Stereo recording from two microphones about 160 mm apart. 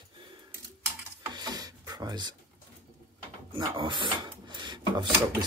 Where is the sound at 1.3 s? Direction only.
25° right (ahead or behind).